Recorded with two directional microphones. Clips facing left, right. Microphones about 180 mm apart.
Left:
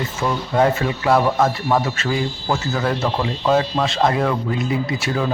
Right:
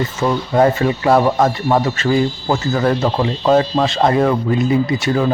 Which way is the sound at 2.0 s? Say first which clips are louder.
Right 7 dB; centre (ahead or behind).